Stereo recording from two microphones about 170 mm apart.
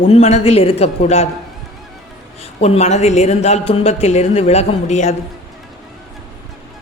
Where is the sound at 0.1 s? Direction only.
40° left (ahead or behind).